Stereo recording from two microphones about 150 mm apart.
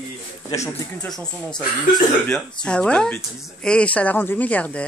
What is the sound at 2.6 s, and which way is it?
Speech, 5° left (ahead or behind).